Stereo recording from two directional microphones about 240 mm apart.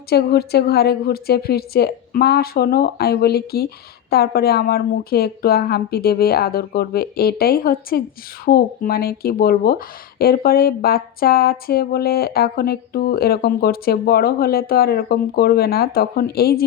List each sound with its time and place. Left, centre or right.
0.1 s speech: left